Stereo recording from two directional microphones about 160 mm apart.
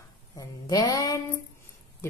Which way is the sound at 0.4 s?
20° left (ahead or behind).